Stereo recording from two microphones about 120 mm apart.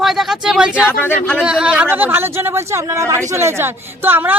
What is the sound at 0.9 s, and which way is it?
Speech, 15° left (ahead or behind).